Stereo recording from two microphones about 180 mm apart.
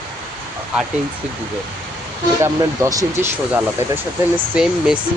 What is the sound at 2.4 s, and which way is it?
Speech, 20° right (ahead or behind).